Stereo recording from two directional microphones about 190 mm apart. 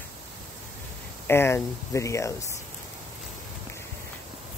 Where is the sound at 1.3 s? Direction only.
10° left (ahead or behind).